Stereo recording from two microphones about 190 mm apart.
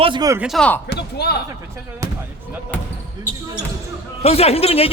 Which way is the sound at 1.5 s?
15° right (ahead or behind).